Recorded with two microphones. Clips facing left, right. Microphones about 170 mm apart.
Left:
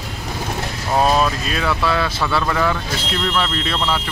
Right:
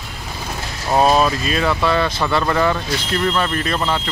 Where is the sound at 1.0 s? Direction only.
5° right (ahead or behind).